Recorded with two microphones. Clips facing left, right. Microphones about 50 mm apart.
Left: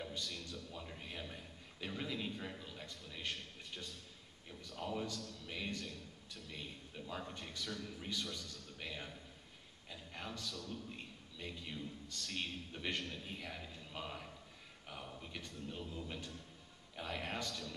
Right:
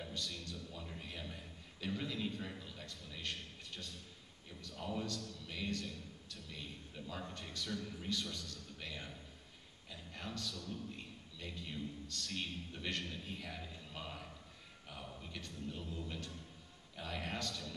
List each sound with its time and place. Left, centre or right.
0.0 s a sound: centre
4.6 s a man's voice: centre
7.1 s a man's voice: centre